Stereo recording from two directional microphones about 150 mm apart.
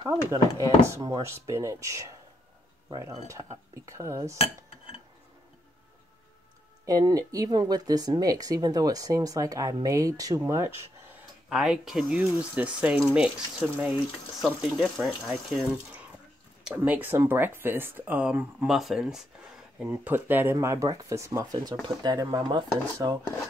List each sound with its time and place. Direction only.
0.0 s speech: 25° right (ahead or behind)
6.9 s speech: 25° right (ahead or behind)
11.4 s speech: 5° right (ahead or behind)
15.0 s speech: centre (ahead or behind)
15.7 s speech: 10° right (ahead or behind); by 23.1 s 30° right (ahead or behind)